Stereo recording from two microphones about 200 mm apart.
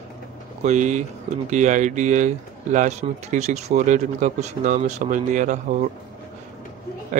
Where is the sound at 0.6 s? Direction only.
35° right (ahead or behind).